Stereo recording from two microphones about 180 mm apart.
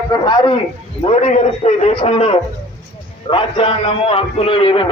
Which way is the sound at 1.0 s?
35° left (ahead or behind).